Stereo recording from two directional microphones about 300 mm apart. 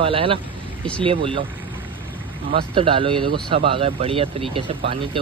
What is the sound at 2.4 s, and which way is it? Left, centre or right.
Speech, centre.